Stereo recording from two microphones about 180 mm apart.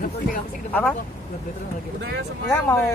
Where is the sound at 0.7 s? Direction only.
10° left (ahead or behind).